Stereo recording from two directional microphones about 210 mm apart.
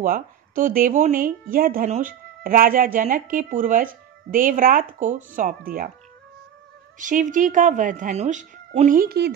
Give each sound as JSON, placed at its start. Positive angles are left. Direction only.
{"t": 0.0, "sound": "speech", "side_deg": -40}
{"t": 7.0, "sound": "speech", "side_deg": -40}